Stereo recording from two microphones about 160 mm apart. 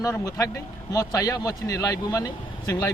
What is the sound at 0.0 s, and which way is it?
A man's voice, 20° left (ahead or behind).